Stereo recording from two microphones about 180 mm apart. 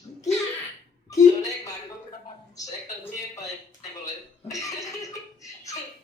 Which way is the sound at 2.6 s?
20° left (ahead or behind).